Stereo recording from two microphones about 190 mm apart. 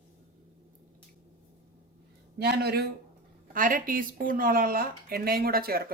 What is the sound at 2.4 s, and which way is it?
Speech, 55° right (ahead or behind).